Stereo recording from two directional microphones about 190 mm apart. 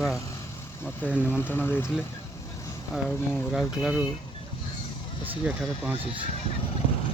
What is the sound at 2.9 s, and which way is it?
Speech, 5° right (ahead or behind).